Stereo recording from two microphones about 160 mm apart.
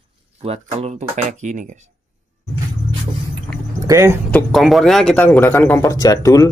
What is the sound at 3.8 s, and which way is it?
Speech, 15° right (ahead or behind).